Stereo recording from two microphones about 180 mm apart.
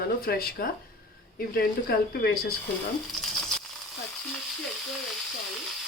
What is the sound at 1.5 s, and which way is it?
Speech, 55° left (ahead or behind).